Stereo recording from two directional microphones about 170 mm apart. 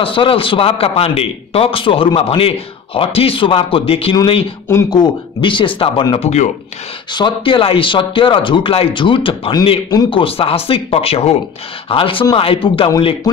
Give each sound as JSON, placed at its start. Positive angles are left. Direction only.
{"t": 0.0, "sound": "a man's voice", "side_deg": 30}
{"t": 4.6, "sound": "speech", "side_deg": 20}
{"t": 7.2, "sound": "a man's voice", "side_deg": 30}